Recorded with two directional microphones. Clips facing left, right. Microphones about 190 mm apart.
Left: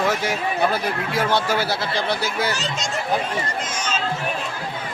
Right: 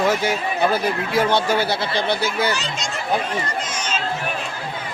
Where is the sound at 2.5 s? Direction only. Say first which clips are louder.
Even; 45° left (ahead or behind).